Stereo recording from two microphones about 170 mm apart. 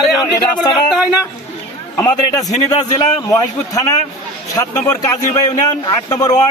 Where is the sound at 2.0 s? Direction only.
20° left (ahead or behind).